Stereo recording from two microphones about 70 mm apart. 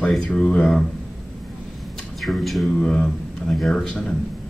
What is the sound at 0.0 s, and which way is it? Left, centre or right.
Speech, centre.